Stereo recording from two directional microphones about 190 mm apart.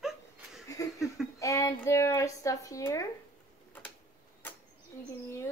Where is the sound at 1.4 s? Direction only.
15° left (ahead or behind).